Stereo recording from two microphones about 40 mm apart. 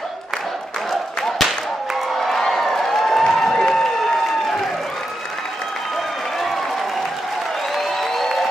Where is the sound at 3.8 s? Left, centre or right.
Centre.